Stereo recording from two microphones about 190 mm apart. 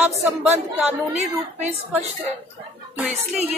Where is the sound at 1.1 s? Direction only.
35° right (ahead or behind).